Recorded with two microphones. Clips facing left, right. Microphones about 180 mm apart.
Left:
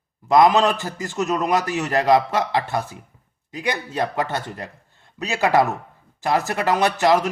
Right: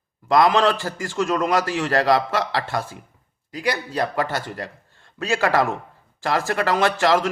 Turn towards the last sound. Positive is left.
turn(degrees=20)  # may be behind; listen again after turning